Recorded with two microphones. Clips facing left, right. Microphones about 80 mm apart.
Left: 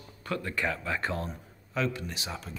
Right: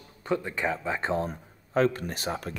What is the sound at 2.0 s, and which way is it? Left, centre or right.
Speech, right.